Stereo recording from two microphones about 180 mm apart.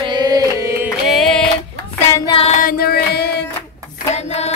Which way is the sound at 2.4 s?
45° left (ahead or behind).